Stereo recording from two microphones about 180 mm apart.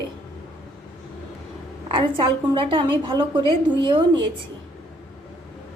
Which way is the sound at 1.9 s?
25° right (ahead or behind).